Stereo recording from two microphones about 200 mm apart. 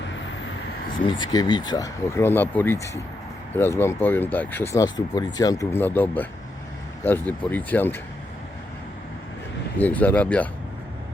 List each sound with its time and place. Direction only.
1.0 s speech: 25° left (ahead or behind)
9.7 s speech: 10° left (ahead or behind)